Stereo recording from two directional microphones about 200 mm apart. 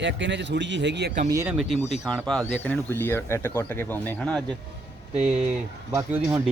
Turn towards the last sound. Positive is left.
turn(degrees=-15)  # may be behind; listen again after turning